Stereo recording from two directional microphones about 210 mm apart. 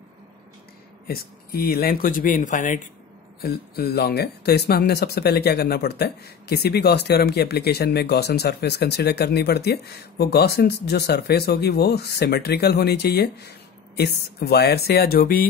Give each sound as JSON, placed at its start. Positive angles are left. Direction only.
{"t": 1.0, "sound": "speech", "side_deg": 45}